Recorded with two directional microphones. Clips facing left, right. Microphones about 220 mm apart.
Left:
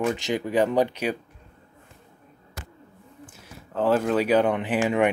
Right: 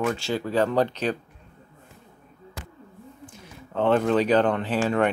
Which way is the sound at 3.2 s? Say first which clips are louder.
Right 2 dB; 5° left (ahead or behind).